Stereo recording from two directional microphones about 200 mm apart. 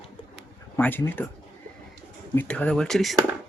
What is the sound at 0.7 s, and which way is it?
Speech, 10° left (ahead or behind).